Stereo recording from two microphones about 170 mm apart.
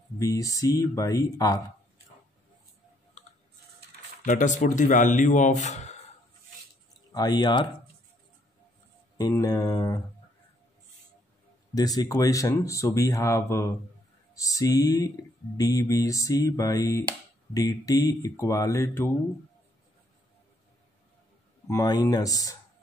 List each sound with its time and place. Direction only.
0.2 s speech: 20° left (ahead or behind)
4.2 s speech: 50° left (ahead or behind)
7.1 s speech: 25° left (ahead or behind)
9.3 s speech: 20° left (ahead or behind)
11.7 s speech: 20° left (ahead or behind)
21.6 s speech: 20° left (ahead or behind)